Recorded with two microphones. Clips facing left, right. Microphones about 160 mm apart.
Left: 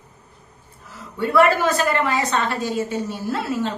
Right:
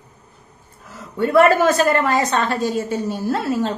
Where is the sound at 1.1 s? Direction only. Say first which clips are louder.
Right 3 dB; 45° right (ahead or behind).